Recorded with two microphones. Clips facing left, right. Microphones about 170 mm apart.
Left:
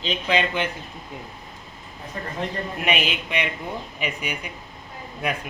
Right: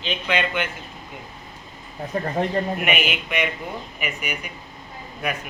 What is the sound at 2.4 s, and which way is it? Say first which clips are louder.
Speech: right 5 dB; 50° right (ahead or behind).